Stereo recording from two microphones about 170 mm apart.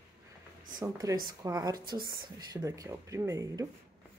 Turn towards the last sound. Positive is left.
turn(degrees=-20)  # may be behind; listen again after turning